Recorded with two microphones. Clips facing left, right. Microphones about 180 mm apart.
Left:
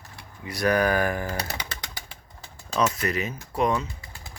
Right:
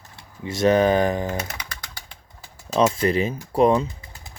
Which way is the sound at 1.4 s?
30° left (ahead or behind).